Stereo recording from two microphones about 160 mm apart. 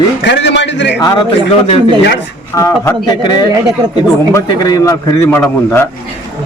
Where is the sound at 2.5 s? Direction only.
15° left (ahead or behind).